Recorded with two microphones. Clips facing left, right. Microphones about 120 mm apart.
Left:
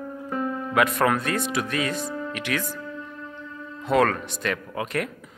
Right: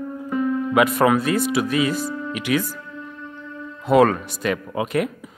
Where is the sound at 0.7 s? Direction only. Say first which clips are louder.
Right 4 dB; 10° right (ahead or behind).